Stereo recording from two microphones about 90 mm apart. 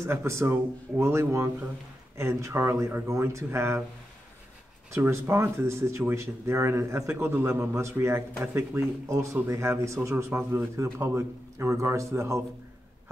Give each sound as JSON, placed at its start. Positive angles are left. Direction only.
{"t": 0.0, "sound": "speech", "side_deg": -30}
{"t": 4.9, "sound": "speech", "side_deg": -30}